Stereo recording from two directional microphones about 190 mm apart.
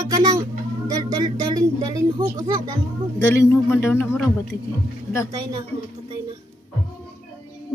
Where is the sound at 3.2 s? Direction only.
15° left (ahead or behind).